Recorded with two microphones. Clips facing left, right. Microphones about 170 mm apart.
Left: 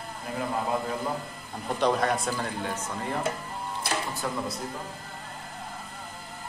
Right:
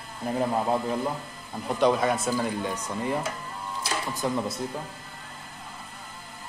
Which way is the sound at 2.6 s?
15° right (ahead or behind).